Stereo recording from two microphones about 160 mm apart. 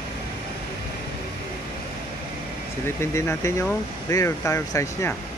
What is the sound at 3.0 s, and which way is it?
Speech, 15° left (ahead or behind).